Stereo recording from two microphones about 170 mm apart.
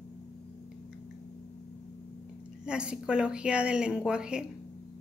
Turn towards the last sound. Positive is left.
turn(degrees=-5)  # may be behind; listen again after turning